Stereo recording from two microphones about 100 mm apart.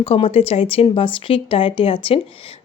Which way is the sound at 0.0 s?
75° left (ahead or behind).